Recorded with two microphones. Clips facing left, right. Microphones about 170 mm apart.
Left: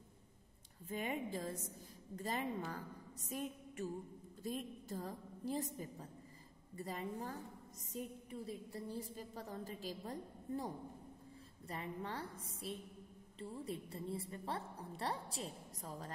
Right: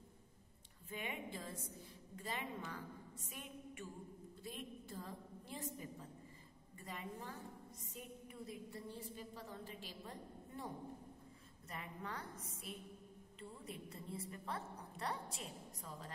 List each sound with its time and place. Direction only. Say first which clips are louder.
0.8 s a woman's voice: left 6 dB; 40° left (ahead or behind)